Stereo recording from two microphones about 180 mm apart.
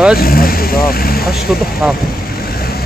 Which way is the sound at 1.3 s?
Centre (ahead or behind).